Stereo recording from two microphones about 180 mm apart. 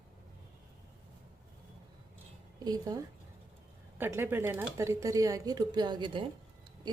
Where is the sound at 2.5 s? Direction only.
20° right (ahead or behind).